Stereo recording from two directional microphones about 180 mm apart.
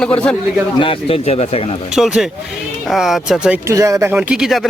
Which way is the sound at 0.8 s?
30° left (ahead or behind).